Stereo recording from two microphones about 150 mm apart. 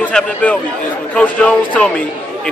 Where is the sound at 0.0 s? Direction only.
10° left (ahead or behind).